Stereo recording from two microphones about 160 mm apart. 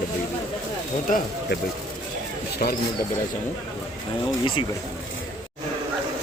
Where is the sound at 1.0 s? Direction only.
60° left (ahead or behind).